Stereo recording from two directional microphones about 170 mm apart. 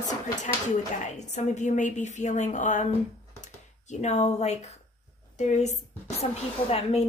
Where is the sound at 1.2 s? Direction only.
45° left (ahead or behind).